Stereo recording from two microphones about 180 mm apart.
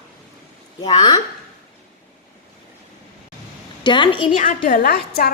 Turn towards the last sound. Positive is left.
turn(degrees=60)  # may be behind; listen again after turning